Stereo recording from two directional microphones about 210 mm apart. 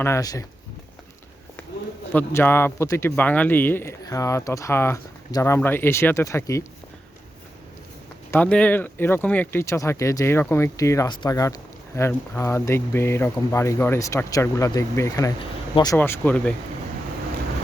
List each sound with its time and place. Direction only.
0.0 s speech: 15° left (ahead or behind)
2.1 s speech: 10° left (ahead or behind)
8.3 s speech: 5° left (ahead or behind)